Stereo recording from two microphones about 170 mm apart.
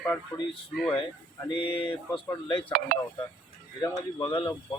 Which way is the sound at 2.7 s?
55° right (ahead or behind).